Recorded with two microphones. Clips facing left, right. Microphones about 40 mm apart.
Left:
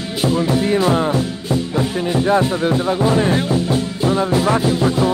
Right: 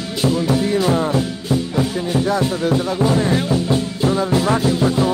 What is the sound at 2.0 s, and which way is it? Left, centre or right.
Speech, left.